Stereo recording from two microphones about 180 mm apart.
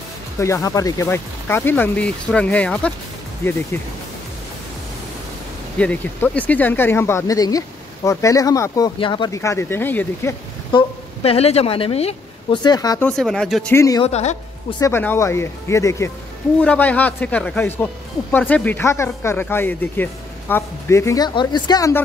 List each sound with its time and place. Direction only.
0.4 s speech: 15° left (ahead or behind)
5.8 s speech: 5° left (ahead or behind)
11.2 s a woman's voice: 35° left (ahead or behind)
12.6 s speech: 20° left (ahead or behind)
13.0 s speech: centre (ahead or behind)
13.7 s speech: 20° left (ahead or behind)
14.0 s a woman's voice: 35° left (ahead or behind)
14.8 s speech: 10° left (ahead or behind)